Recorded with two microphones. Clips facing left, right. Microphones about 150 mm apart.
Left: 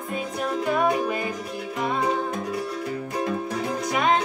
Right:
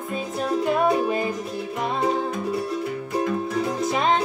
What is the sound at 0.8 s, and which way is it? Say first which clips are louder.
Music: right 2 dB; 25° right (ahead or behind).